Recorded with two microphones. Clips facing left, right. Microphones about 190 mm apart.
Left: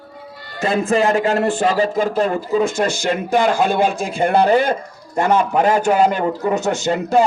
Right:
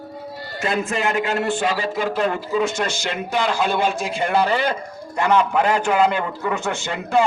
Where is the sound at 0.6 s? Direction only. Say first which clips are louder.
Left 6 dB; 30° left (ahead or behind).